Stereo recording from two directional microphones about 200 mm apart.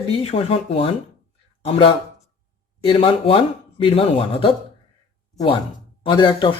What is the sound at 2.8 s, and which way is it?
Speech, 30° left (ahead or behind).